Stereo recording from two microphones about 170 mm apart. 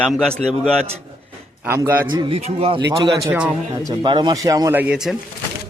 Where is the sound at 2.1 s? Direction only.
30° right (ahead or behind).